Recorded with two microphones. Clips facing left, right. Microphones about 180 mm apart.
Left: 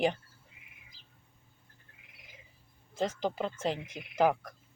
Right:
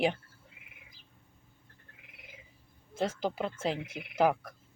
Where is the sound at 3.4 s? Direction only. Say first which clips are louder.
Even; 5° right (ahead or behind).